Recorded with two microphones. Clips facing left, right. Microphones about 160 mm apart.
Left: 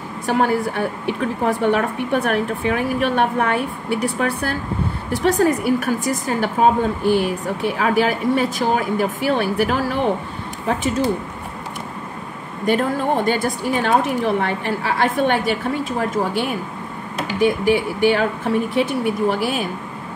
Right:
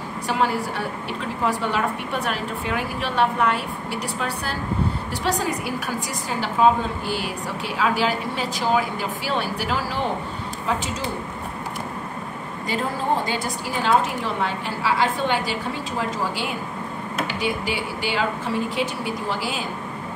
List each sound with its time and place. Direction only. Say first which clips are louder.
0.3 s a woman's voice: left 5 dB; 55° left (ahead or behind)
12.6 s a woman's voice: left 6 dB; 60° left (ahead or behind)
17.3 s a woman's voice: left 13 dB; 50° left (ahead or behind)